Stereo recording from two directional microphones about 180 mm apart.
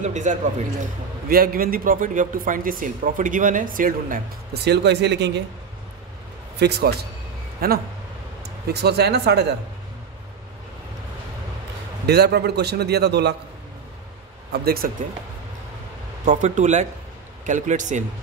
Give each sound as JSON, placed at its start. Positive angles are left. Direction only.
{"t": 0.0, "sound": "speech", "side_deg": -40}
{"t": 1.3, "sound": "speech", "side_deg": -55}
{"t": 4.6, "sound": "speech", "side_deg": -70}
{"t": 6.6, "sound": "a man's voice", "side_deg": -60}
{"t": 12.1, "sound": "a man's voice", "side_deg": -65}
{"t": 14.5, "sound": "a man's voice", "side_deg": -60}
{"t": 16.3, "sound": "speech", "side_deg": -45}